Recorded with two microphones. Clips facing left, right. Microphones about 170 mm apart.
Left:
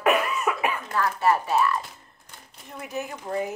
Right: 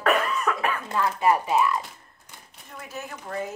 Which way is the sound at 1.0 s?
15° right (ahead or behind).